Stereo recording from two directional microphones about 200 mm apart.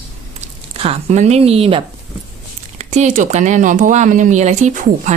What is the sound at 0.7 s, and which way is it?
Speech, 30° right (ahead or behind).